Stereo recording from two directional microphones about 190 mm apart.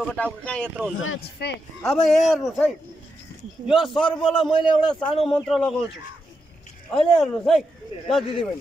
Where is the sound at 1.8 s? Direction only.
Centre (ahead or behind).